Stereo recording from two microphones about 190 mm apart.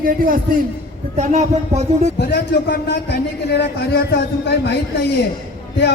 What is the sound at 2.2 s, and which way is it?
A man's voice, 60° left (ahead or behind).